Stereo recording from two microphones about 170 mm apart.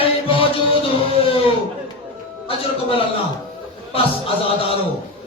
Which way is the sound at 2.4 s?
35° left (ahead or behind).